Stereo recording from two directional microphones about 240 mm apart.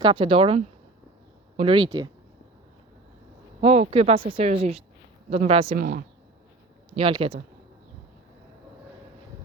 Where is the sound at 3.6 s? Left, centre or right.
Right.